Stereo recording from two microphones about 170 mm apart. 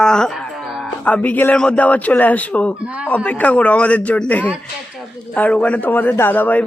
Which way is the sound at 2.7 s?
5° right (ahead or behind).